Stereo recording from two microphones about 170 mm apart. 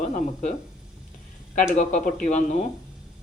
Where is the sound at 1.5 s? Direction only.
45° left (ahead or behind).